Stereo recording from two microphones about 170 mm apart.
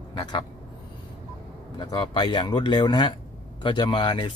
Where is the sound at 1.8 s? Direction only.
25° left (ahead or behind).